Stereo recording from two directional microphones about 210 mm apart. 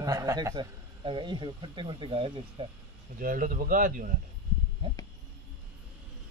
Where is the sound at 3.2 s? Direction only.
40° right (ahead or behind).